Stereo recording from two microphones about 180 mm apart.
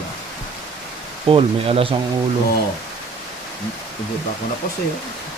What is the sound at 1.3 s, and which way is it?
Speech, 30° right (ahead or behind).